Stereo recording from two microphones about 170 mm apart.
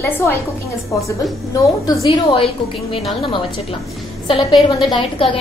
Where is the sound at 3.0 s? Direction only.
Centre (ahead or behind).